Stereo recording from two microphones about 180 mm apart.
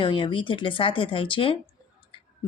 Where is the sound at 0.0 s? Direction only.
25° left (ahead or behind).